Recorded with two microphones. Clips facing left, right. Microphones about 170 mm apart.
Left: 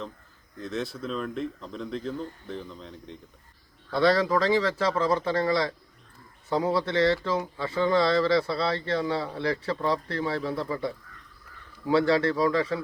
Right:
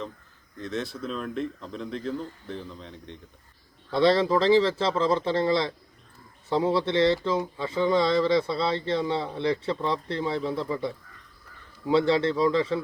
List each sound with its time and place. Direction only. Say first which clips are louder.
0.6 s speech: even; centre (ahead or behind)
3.9 s speech: right 1 dB; 25° right (ahead or behind)